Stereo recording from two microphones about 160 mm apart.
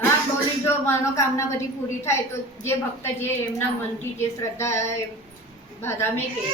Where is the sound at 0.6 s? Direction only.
15° left (ahead or behind).